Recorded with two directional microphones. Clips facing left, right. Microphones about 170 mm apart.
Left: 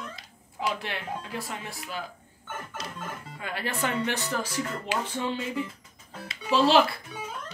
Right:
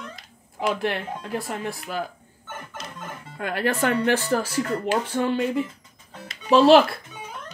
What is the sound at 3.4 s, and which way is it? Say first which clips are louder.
Speech: right 8 dB; 55° right (ahead or behind).